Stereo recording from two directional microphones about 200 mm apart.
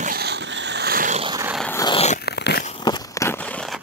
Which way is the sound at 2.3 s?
55° left (ahead or behind).